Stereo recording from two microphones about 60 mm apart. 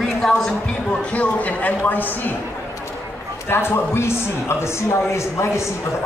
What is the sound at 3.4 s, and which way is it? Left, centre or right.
Speech, left.